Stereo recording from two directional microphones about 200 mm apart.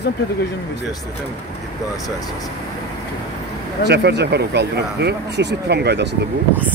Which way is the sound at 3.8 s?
55° right (ahead or behind).